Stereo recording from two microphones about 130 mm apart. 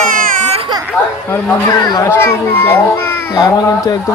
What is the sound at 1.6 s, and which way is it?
Speech, 30° left (ahead or behind).